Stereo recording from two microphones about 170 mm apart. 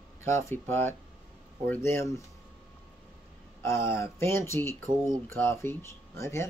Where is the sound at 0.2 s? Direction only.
15° left (ahead or behind).